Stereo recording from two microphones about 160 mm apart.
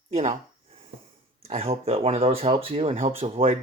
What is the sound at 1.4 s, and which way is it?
Speech, 40° right (ahead or behind).